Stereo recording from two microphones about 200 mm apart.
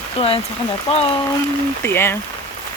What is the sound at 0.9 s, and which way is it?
Speech, 30° left (ahead or behind).